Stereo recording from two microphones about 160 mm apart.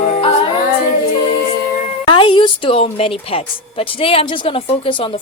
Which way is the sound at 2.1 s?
30° left (ahead or behind).